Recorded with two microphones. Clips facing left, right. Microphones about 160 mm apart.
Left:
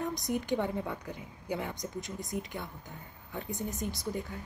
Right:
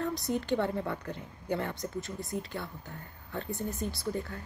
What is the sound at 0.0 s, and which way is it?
A woman's voice, 15° left (ahead or behind).